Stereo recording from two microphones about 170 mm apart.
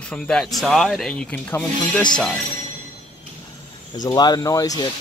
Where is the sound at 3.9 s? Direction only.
25° left (ahead or behind).